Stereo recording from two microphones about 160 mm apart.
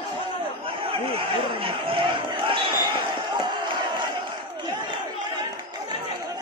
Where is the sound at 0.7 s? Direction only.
35° right (ahead or behind).